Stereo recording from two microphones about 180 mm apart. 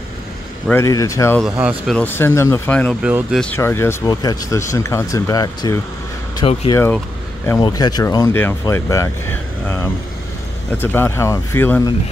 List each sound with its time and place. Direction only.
0.7 s speech: 15° left (ahead or behind)
1.4 s speech: 5° right (ahead or behind)
2.0 s speech: 10° left (ahead or behind)
3.0 s speech: 5° right (ahead or behind)
3.3 s speech: 10° left (ahead or behind)